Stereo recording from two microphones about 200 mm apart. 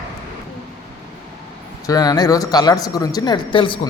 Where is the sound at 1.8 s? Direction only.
20° left (ahead or behind).